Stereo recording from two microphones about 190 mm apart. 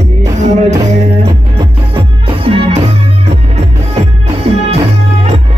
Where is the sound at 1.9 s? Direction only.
30° right (ahead or behind).